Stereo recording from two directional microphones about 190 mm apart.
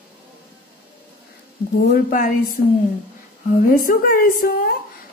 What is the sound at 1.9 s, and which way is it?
Speech, 45° left (ahead or behind).